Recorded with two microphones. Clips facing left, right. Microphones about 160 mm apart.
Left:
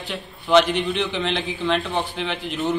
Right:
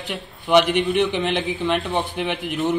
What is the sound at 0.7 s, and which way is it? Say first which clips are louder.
Speech: right 4 dB; 15° right (ahead or behind).